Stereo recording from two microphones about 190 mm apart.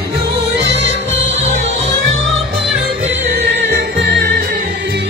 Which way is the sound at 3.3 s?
60° right (ahead or behind).